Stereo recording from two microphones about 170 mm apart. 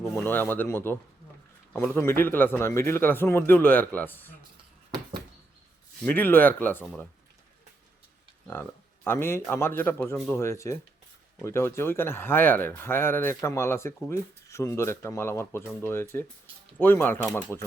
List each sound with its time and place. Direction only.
0.3 s speech: 10° left (ahead or behind)
6.1 s speech: 10° left (ahead or behind)
9.0 s speech: 15° left (ahead or behind)